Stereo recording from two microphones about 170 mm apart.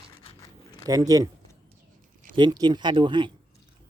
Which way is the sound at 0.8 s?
20° right (ahead or behind).